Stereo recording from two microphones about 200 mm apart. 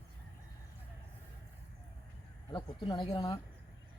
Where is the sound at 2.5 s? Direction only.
20° left (ahead or behind).